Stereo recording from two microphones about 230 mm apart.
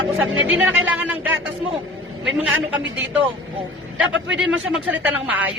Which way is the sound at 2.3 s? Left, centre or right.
Centre.